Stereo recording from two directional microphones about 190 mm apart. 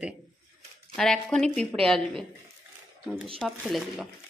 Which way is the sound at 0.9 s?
5° left (ahead or behind).